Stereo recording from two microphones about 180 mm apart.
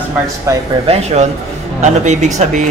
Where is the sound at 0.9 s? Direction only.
35° right (ahead or behind).